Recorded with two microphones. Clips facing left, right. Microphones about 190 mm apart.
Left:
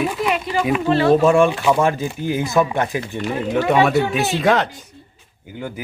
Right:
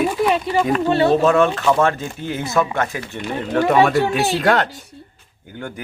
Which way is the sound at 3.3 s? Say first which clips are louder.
Right 1 dB; 5° left (ahead or behind).